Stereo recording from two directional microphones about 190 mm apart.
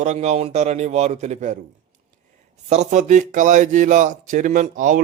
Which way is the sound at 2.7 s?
40° right (ahead or behind).